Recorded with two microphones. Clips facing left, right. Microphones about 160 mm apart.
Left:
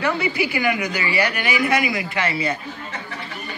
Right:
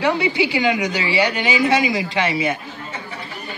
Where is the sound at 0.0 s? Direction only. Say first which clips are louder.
Right 3 dB; 20° right (ahead or behind).